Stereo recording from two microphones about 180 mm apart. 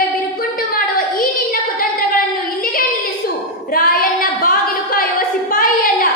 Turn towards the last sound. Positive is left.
turn(degrees=50)  # may be behind; listen again after turning